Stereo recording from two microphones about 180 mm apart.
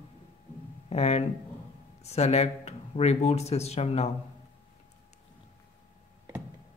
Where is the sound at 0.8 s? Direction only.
35° left (ahead or behind).